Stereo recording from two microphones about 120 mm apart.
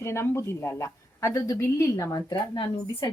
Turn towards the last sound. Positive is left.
turn(degrees=35)  # may be behind; listen again after turning